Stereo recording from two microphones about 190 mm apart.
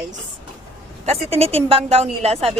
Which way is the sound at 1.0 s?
30° right (ahead or behind).